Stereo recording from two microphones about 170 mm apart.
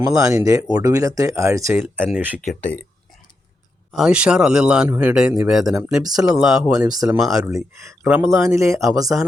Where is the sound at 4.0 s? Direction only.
5° right (ahead or behind).